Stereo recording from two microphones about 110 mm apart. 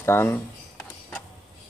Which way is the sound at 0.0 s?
20° left (ahead or behind).